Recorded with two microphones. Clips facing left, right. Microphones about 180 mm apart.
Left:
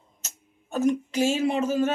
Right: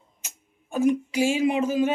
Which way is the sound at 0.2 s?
10° right (ahead or behind).